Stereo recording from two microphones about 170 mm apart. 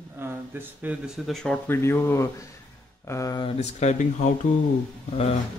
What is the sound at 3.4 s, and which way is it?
Speech, 40° left (ahead or behind).